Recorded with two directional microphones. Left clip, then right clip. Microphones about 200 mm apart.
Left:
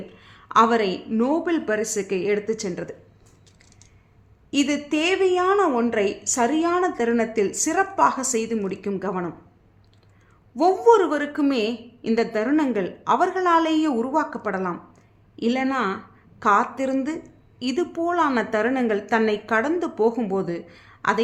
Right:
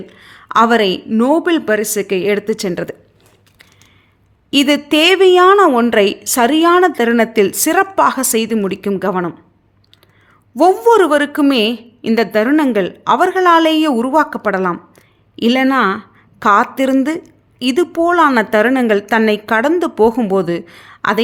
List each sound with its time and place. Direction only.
0.1 s a woman's voice: 35° right (ahead or behind)
4.5 s a woman's voice: 40° right (ahead or behind)
10.5 s a woman's voice: 35° right (ahead or behind)